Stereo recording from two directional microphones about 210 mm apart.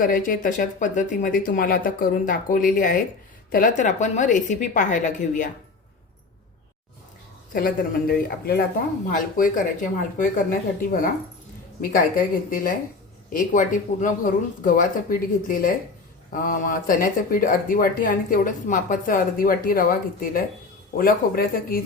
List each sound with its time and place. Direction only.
0.0 s speech: 40° left (ahead or behind)
7.5 s speech: 45° left (ahead or behind)